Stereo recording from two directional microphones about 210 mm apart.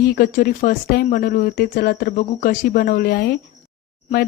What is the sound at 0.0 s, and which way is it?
A woman's voice, 40° left (ahead or behind).